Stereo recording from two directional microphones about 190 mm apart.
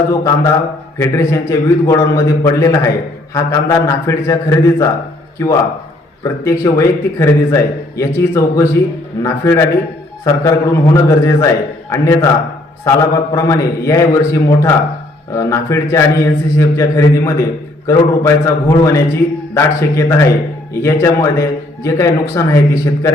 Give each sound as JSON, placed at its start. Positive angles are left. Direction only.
{"t": 0.1, "sound": "a man's voice", "side_deg": 20}